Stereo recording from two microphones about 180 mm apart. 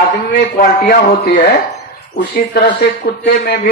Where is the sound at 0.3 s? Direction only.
55° left (ahead or behind).